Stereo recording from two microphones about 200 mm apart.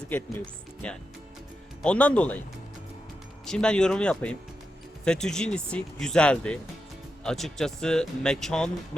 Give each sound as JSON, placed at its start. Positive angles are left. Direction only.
{"t": 1.8, "sound": "speech", "side_deg": 5}
{"t": 3.4, "sound": "speech", "side_deg": 5}